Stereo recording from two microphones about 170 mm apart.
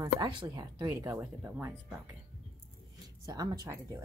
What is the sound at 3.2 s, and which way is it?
Speech, 20° right (ahead or behind).